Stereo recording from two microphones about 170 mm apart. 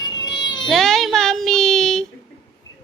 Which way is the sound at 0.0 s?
25° left (ahead or behind).